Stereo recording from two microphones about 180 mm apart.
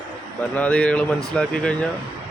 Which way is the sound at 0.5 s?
5° left (ahead or behind).